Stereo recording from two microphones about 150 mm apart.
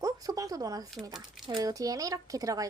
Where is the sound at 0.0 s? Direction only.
25° right (ahead or behind).